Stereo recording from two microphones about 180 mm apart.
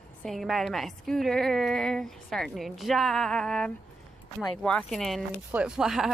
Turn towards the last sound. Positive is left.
turn(degrees=0)  # may be behind; listen again after turning